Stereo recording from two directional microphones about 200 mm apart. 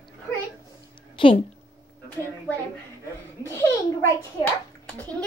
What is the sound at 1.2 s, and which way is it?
Speech, 25° left (ahead or behind).